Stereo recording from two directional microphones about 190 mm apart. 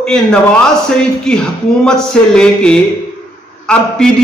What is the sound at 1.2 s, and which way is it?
A man's voice, 5° left (ahead or behind).